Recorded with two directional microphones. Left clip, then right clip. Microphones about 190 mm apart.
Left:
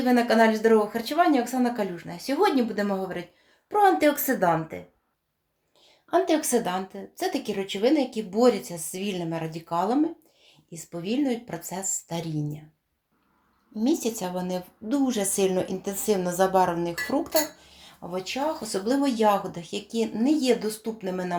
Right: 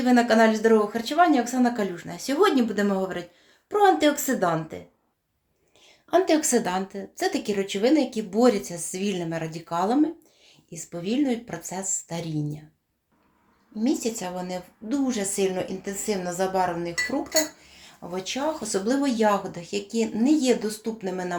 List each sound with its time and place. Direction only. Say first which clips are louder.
0.0 s speech: right 1 dB; 5° right (ahead or behind)
6.1 s speech: right 2 dB; 5° right (ahead or behind)
13.7 s a woman's voice: even; 15° left (ahead or behind)
18.1 s speech: even; 5° right (ahead or behind)